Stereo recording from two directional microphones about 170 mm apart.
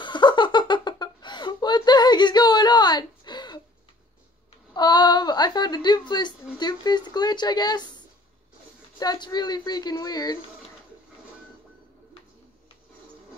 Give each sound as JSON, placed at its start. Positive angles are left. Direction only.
{"t": 0.0, "sound": "a sound", "side_deg": 25}
{"t": 4.7, "sound": "a woman's voice", "side_deg": 25}
{"t": 9.0, "sound": "a woman's voice", "side_deg": 25}